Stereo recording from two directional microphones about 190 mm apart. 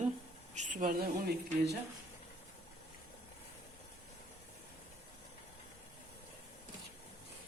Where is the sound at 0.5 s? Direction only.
40° right (ahead or behind).